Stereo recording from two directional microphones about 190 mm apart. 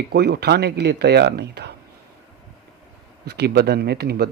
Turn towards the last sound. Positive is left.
turn(degrees=-55)  # may be behind; listen again after turning